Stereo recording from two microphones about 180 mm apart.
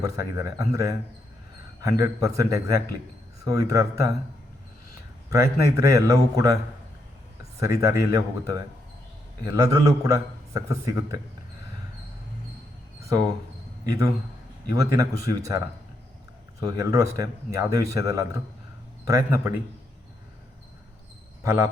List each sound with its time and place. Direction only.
0.0 s a man's voice: 15° right (ahead or behind)
5.3 s a man's voice: 15° right (ahead or behind)
7.6 s a man's voice: 15° right (ahead or behind)
13.0 s speech: 15° right (ahead or behind)
14.8 s speech: 20° right (ahead or behind)
16.6 s a man's voice: 20° right (ahead or behind)